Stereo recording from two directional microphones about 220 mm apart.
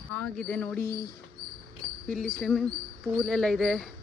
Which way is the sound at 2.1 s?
40° right (ahead or behind).